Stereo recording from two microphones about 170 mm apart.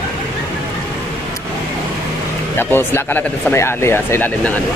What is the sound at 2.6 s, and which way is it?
Speech, 10° left (ahead or behind).